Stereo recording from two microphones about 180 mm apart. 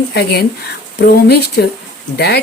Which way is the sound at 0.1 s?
65° left (ahead or behind).